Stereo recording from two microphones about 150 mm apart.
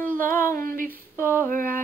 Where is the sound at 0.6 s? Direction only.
65° right (ahead or behind).